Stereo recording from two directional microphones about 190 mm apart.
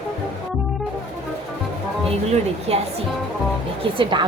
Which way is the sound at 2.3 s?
30° right (ahead or behind).